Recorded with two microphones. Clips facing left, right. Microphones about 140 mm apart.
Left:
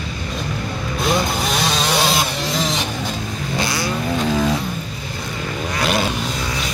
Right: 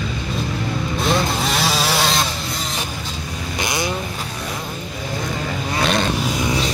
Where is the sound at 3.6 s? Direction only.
20° right (ahead or behind).